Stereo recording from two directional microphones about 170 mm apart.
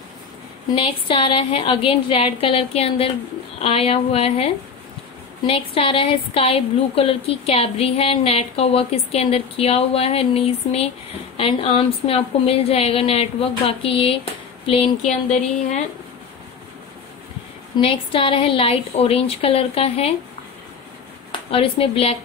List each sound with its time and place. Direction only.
0.7 s a woman's voice: 30° left (ahead or behind)
5.5 s a woman's voice: 35° left (ahead or behind)
17.7 s a woman's voice: 30° left (ahead or behind)
21.3 s a woman's voice: 35° left (ahead or behind)